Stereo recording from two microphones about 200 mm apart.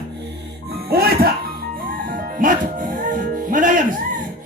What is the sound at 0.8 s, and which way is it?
Speech, 50° right (ahead or behind).